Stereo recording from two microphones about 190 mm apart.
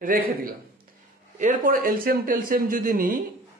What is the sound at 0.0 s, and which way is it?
A man's voice, 45° right (ahead or behind).